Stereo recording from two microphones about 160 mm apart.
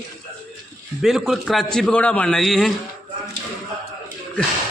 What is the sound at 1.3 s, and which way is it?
A man's voice, centre (ahead or behind).